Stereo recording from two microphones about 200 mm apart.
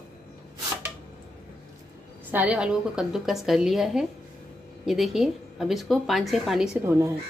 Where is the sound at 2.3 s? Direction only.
5° right (ahead or behind).